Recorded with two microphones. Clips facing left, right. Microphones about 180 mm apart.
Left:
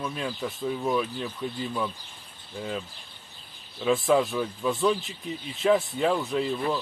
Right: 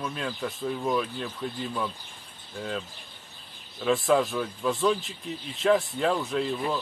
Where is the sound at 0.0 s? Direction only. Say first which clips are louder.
Left 1 dB; centre (ahead or behind).